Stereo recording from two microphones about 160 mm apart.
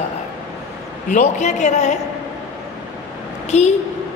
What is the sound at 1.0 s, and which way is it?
Speech, 50° left (ahead or behind).